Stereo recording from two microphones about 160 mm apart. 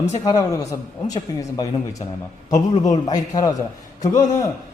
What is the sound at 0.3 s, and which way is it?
A man's voice, 25° left (ahead or behind).